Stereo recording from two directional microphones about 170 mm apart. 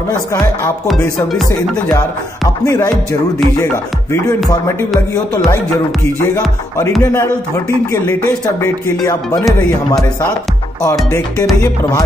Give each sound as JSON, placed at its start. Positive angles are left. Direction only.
{"t": 0.8, "sound": "music", "side_deg": 0}
{"t": 2.6, "sound": "speech", "side_deg": 15}
{"t": 7.0, "sound": "speech", "side_deg": 15}
{"t": 9.0, "sound": "music", "side_deg": 20}